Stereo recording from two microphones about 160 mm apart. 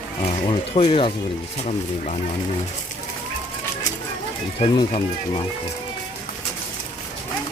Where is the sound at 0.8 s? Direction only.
35° left (ahead or behind).